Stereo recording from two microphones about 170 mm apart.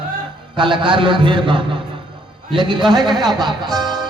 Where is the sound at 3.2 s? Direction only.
25° right (ahead or behind).